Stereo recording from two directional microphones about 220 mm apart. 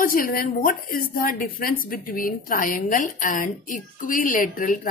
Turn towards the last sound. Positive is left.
turn(degrees=35)  # may be behind; listen again after turning